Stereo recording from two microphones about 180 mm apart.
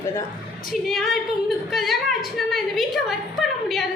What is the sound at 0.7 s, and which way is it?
A woman's voice, centre (ahead or behind).